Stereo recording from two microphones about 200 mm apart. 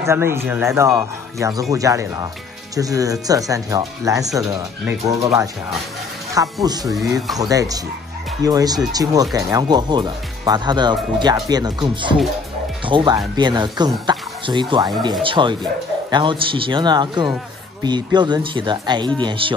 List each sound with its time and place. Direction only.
0.0 s speech: 15° right (ahead or behind)
6.3 s speech: 20° right (ahead or behind)
6.9 s speech: centre (ahead or behind)
7.3 s speech: 15° right (ahead or behind)
14.0 s dog: 25° right (ahead or behind)
15.2 s speech: 25° right (ahead or behind)